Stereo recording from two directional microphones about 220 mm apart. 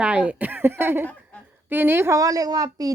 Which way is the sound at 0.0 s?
5° right (ahead or behind).